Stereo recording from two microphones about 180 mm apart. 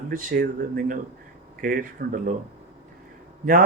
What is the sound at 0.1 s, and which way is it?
Speech, 50° right (ahead or behind).